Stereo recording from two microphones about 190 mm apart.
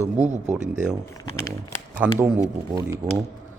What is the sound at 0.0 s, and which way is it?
Speech, 40° right (ahead or behind).